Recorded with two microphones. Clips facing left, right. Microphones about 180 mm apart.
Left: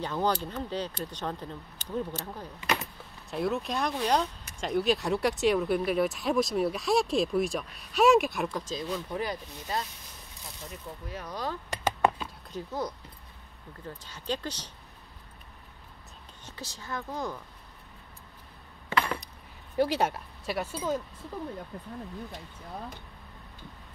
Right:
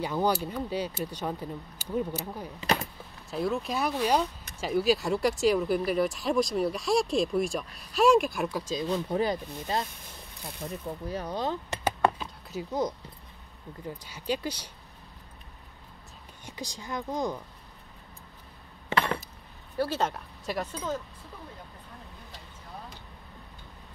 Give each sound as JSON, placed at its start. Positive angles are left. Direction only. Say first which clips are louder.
{"t": 0.0, "sound": "speech", "louder": "right 2 dB", "side_deg": -10}
{"t": 2.6, "sound": "speech", "louder": "right 3 dB", "side_deg": -35}
{"t": 3.3, "sound": "speech", "louder": "even", "side_deg": 0}
{"t": 8.8, "sound": "speech", "louder": "right 8 dB", "side_deg": -30}
{"t": 11.8, "sound": "a sound", "louder": "even", "side_deg": -5}
{"t": 13.8, "sound": "speech", "louder": "right 3 dB", "side_deg": -10}
{"t": 16.4, "sound": "speech", "louder": "right 3 dB", "side_deg": -15}
{"t": 19.8, "sound": "speech", "louder": "left 2 dB", "side_deg": 15}